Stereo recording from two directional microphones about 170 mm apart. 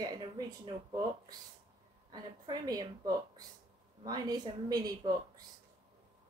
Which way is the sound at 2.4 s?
25° right (ahead or behind).